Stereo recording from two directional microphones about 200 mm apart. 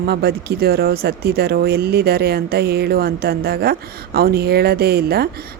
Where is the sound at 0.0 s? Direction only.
50° right (ahead or behind).